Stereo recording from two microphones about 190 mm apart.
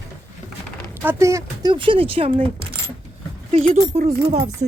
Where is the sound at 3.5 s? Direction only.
35° right (ahead or behind).